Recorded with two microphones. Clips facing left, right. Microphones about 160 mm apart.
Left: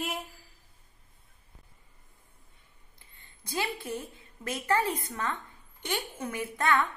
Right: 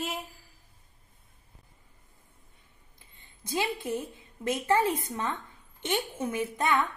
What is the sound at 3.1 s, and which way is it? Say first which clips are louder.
A woman's voice: right 3 dB; 20° right (ahead or behind).